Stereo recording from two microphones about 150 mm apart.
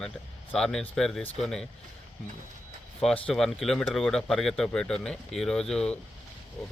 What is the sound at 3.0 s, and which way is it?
A man's voice, 5° left (ahead or behind).